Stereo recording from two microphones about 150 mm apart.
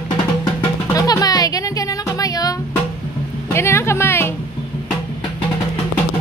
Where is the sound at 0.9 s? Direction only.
25° left (ahead or behind).